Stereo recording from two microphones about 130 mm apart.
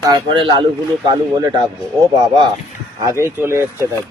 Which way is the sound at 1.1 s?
30° right (ahead or behind).